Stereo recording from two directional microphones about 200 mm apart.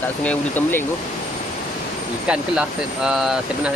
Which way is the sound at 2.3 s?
5° right (ahead or behind).